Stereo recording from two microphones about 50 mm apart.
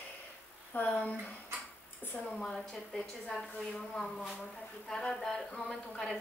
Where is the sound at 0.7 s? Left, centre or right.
Left.